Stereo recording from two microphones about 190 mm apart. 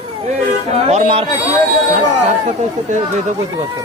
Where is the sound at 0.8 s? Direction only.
35° right (ahead or behind).